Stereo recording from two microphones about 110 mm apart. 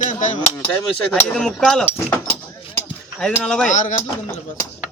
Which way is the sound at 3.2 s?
5° left (ahead or behind).